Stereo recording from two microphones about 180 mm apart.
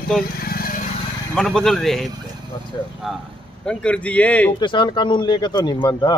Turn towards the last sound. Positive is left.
turn(degrees=25)  # may be behind; listen again after turning